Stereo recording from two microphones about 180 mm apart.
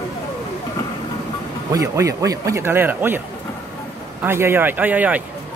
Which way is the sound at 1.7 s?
15° right (ahead or behind).